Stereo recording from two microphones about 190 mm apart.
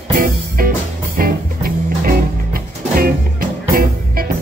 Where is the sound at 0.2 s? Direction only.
50° right (ahead or behind).